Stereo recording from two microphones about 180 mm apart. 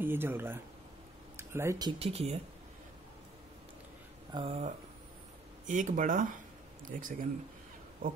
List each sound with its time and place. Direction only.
0.0 s speech: 10° right (ahead or behind)
2.0 s speech: 35° right (ahead or behind)
4.3 s speech: 30° right (ahead or behind)
5.7 s speech: 45° right (ahead or behind)